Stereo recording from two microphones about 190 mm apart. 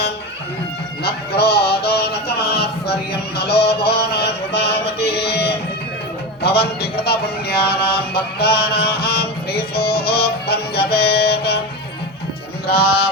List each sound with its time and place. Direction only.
1.4 s music: 55° left (ahead or behind)
3.1 s a sound: 60° left (ahead or behind)
12.6 s music: 55° left (ahead or behind)